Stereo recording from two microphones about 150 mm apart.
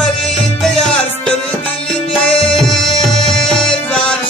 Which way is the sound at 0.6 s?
Centre (ahead or behind).